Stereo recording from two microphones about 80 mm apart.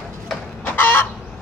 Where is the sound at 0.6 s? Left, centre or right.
Left.